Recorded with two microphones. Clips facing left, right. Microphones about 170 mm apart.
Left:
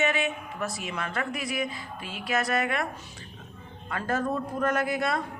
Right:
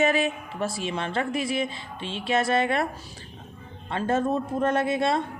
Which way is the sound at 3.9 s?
25° right (ahead or behind).